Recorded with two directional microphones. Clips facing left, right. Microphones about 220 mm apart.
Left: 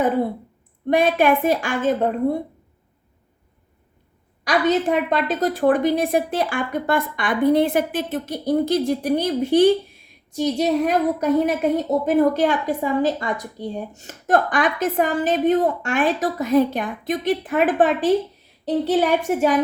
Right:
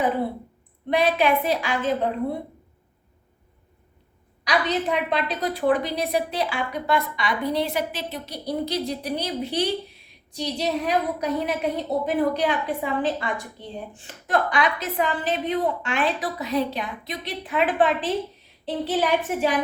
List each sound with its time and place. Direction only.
0.9 s a woman's voice: 50° left (ahead or behind)
4.4 s a woman's voice: 45° left (ahead or behind)